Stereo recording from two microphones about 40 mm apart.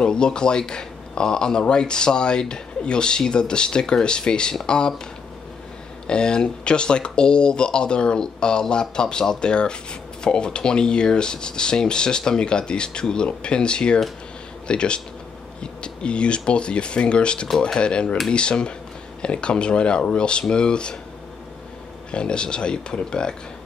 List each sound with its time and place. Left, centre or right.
0.0 s speech: left
6.0 s speech: left
22.1 s speech: left